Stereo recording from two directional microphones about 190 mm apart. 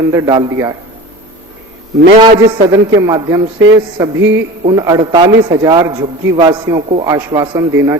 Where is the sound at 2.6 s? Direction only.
20° right (ahead or behind).